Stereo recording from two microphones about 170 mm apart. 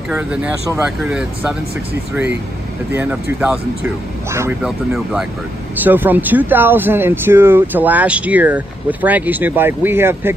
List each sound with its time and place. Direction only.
0.1 s speech: 5° right (ahead or behind)
2.9 s speech: 15° right (ahead or behind)
4.3 s speech: 15° right (ahead or behind)
4.6 s speech: centre (ahead or behind)